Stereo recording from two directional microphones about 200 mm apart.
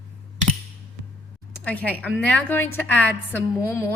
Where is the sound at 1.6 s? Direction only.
5° left (ahead or behind).